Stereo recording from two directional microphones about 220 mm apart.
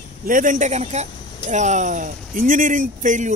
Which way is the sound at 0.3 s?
35° right (ahead or behind).